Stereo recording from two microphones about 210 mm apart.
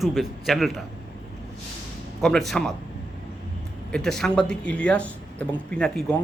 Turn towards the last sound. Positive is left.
turn(degrees=5)  # may be behind; listen again after turning